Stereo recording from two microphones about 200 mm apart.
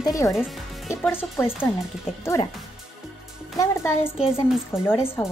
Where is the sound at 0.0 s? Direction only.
15° left (ahead or behind).